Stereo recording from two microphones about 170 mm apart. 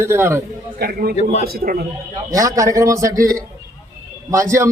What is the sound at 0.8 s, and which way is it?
A man's voice, 60° right (ahead or behind).